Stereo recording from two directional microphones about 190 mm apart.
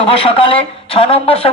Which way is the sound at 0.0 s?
30° left (ahead or behind).